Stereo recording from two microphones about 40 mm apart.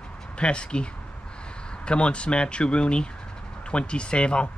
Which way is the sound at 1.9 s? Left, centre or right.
Left.